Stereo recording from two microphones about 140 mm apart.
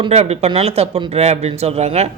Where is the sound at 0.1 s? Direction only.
50° right (ahead or behind).